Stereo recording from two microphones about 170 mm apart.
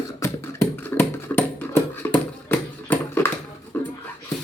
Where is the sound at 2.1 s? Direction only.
10° left (ahead or behind).